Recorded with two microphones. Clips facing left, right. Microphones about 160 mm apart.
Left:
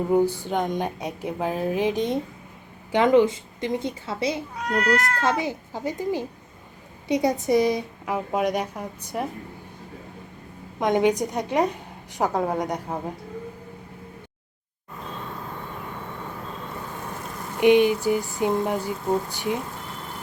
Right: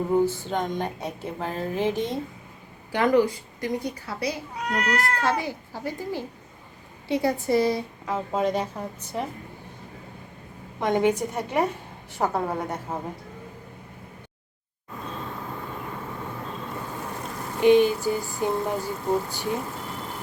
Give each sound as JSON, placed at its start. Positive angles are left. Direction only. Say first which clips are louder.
{"t": 0.1, "sound": "a woman's voice", "louder": "left 2 dB", "side_deg": 15}
{"t": 4.8, "sound": "speech", "louder": "left 3 dB", "side_deg": -5}
{"t": 5.4, "sound": "a woman's voice", "louder": "left 3 dB", "side_deg": 20}
{"t": 10.8, "sound": "a woman's voice", "louder": "left 2 dB", "side_deg": 15}
{"t": 17.6, "sound": "a woman's voice", "louder": "left 1 dB", "side_deg": 15}